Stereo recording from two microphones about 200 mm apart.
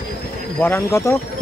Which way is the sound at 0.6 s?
10° left (ahead or behind).